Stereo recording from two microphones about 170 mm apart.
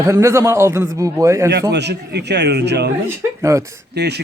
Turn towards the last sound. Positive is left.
turn(degrees=-80)